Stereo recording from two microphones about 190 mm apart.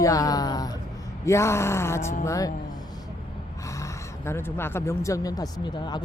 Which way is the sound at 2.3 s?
20° left (ahead or behind).